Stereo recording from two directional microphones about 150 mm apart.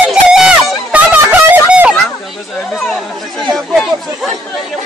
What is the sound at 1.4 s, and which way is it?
Music, 10° right (ahead or behind).